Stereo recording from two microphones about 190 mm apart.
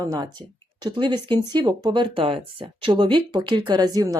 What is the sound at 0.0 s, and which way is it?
Speech, 20° right (ahead or behind).